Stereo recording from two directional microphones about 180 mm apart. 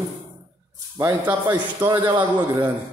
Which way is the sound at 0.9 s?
15° right (ahead or behind).